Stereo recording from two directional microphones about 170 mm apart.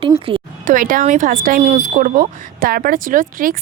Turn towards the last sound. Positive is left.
turn(degrees=-55)  # may be behind; listen again after turning